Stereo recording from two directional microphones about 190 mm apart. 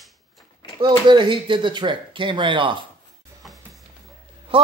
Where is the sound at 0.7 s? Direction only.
25° right (ahead or behind).